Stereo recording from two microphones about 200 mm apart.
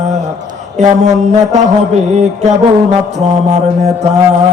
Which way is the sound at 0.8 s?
35° right (ahead or behind).